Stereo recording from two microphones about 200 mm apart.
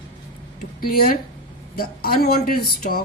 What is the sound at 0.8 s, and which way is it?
Speech, 45° left (ahead or behind).